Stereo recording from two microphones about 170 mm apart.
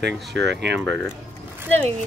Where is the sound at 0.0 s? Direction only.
85° right.